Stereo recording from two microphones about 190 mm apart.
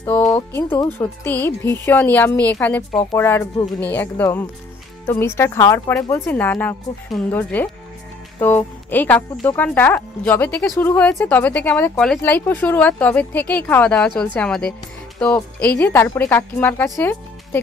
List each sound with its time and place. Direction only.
0.0 s speech: 15° left (ahead or behind)